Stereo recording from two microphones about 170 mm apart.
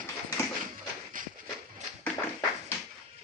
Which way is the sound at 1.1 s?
50° right (ahead or behind).